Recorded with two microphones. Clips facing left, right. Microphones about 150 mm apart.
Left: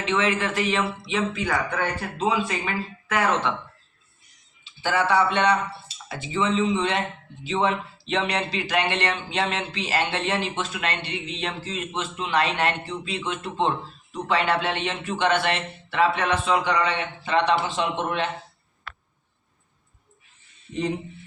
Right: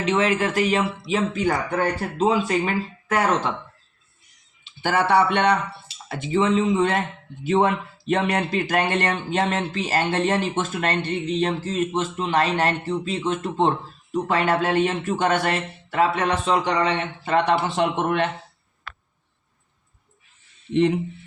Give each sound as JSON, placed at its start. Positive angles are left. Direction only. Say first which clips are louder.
{"t": 0.2, "sound": "speech", "louder": "right 3 dB", "side_deg": -40}
{"t": 4.8, "sound": "speech", "louder": "right 2 dB", "side_deg": -55}
{"t": 20.7, "sound": "speech", "louder": "right 8 dB", "side_deg": -75}